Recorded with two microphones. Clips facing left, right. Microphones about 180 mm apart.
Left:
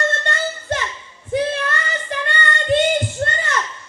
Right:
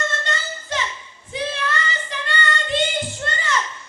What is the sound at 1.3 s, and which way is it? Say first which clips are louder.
Child singing: left 5 dB; 50° left (ahead or behind).